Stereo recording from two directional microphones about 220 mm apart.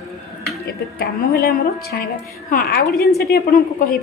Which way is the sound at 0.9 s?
45° left (ahead or behind).